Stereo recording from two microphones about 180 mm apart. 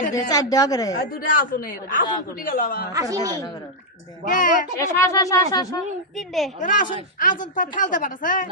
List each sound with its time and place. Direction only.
0.1 s a woman's voice: 20° left (ahead or behind)
0.9 s a man's voice: 50° left (ahead or behind)
2.9 s speech: 20° right (ahead or behind)
4.3 s a man's voice: 50° left (ahead or behind)
4.9 s a woman's voice: 15° left (ahead or behind)
6.1 s a woman's voice: centre (ahead or behind)
6.6 s a man's voice: 45° left (ahead or behind)